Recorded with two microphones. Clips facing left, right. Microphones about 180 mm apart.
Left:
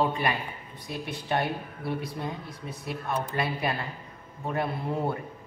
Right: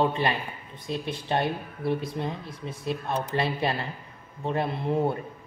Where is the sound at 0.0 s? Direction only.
25° right (ahead or behind).